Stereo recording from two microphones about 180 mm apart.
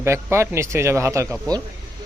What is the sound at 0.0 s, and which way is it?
Speech, 15° right (ahead or behind).